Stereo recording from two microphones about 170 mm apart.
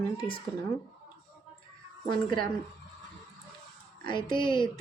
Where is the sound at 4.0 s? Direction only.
30° left (ahead or behind).